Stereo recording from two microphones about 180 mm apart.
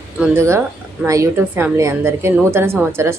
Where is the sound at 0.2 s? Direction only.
15° right (ahead or behind).